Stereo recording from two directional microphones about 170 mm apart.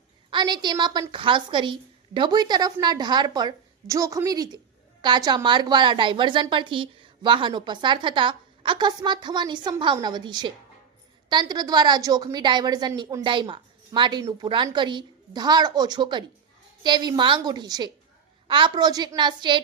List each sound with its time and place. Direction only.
0.3 s a woman's voice: 25° right (ahead or behind)